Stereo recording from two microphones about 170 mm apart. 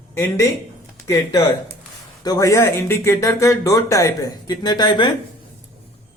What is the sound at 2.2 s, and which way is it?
Speech, 20° left (ahead or behind).